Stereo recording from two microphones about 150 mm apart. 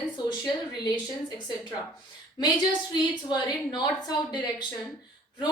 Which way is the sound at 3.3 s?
30° left (ahead or behind).